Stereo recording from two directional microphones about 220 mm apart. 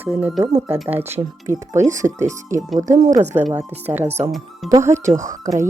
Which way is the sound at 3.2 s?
30° right (ahead or behind).